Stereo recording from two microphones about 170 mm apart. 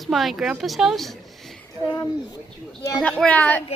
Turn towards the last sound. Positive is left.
turn(degrees=10)  # may be behind; listen again after turning